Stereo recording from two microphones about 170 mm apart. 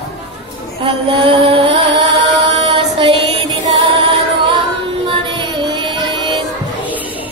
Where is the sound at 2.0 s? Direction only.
30° right (ahead or behind).